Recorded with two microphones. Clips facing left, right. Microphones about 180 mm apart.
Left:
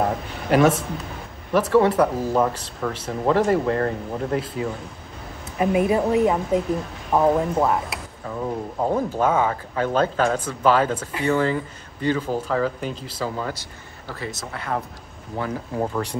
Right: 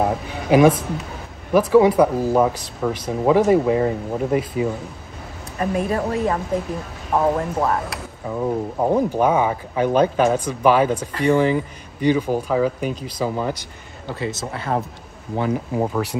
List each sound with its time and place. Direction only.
0.0 s a sound: 10° right (ahead or behind)
1.5 s speech: 10° right (ahead or behind)
5.6 s speech: 10° left (ahead or behind)
8.3 s speech: 15° right (ahead or behind)